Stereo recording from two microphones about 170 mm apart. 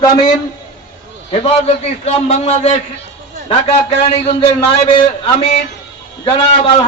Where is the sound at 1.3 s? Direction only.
35° left (ahead or behind).